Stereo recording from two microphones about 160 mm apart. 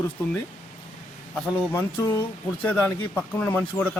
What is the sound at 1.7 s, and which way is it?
Speech, 20° left (ahead or behind).